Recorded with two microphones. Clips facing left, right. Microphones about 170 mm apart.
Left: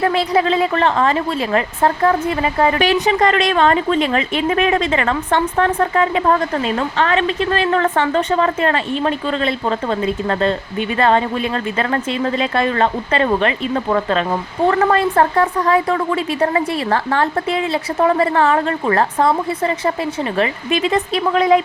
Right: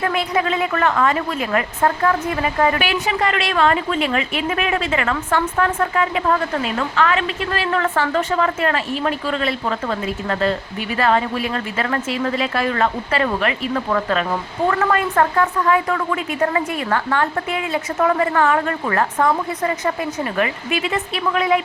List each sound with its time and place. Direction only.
0.0 s a woman's voice: 30° left (ahead or behind)